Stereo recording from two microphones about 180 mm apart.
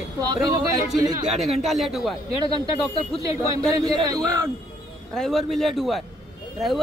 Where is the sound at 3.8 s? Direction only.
20° right (ahead or behind).